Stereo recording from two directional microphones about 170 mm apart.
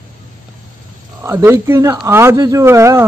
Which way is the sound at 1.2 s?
15° right (ahead or behind).